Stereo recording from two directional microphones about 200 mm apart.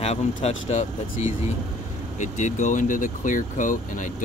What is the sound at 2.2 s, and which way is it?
Speech, 35° left (ahead or behind).